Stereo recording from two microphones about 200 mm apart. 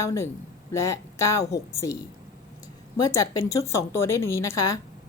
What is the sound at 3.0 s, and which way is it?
A woman's voice, 15° left (ahead or behind).